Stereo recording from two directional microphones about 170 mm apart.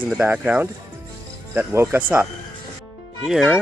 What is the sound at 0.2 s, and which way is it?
Speech, 10° right (ahead or behind).